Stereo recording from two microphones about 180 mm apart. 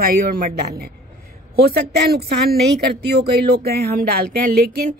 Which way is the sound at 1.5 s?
60° right (ahead or behind).